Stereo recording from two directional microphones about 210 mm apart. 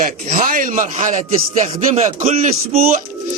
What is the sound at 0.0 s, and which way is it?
Speech, 40° right (ahead or behind).